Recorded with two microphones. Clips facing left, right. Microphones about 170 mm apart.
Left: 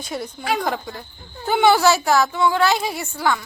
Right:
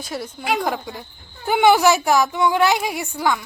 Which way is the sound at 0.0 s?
5° right (ahead or behind).